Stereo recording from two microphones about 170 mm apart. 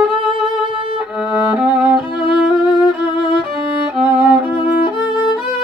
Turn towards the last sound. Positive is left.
turn(degrees=-10)  # may be behind; listen again after turning